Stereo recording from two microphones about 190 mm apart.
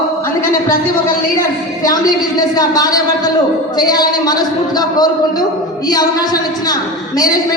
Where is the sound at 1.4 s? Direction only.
20° left (ahead or behind).